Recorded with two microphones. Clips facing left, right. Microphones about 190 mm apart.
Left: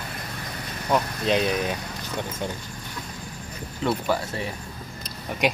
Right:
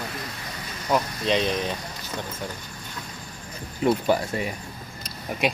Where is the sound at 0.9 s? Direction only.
5° left (ahead or behind).